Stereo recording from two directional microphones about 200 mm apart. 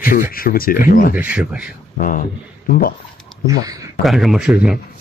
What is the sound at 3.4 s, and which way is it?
Speech, 20° right (ahead or behind).